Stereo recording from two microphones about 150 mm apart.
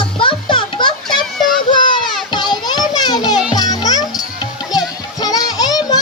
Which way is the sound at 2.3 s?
30° left (ahead or behind).